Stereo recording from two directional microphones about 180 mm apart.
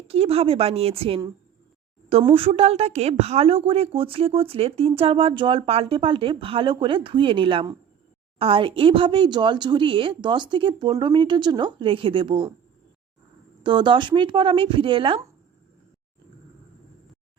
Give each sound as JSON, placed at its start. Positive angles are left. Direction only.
{"t": 0.1, "sound": "speech", "side_deg": -35}
{"t": 13.6, "sound": "speech", "side_deg": -25}